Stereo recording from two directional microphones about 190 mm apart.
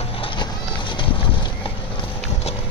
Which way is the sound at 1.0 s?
25° left (ahead or behind).